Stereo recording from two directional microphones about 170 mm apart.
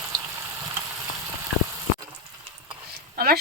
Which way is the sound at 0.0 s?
15° right (ahead or behind).